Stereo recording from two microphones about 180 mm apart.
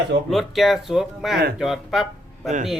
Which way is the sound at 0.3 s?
Centre (ahead or behind).